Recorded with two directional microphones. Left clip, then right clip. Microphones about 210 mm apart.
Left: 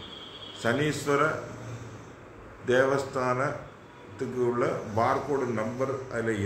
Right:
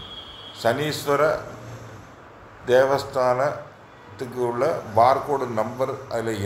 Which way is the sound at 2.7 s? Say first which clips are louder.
Right 6 dB; 5° right (ahead or behind).